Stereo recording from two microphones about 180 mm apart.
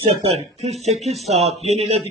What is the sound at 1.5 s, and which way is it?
Speech, 35° right (ahead or behind).